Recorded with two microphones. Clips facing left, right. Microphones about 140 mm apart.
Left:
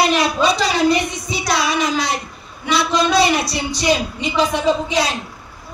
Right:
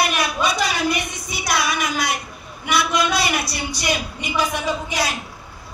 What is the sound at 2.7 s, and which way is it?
A man's voice, 30° left (ahead or behind).